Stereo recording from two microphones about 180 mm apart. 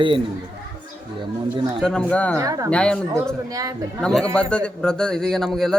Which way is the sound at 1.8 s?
5° left (ahead or behind).